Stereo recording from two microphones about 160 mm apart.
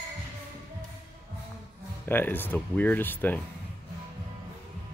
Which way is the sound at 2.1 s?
10° left (ahead or behind).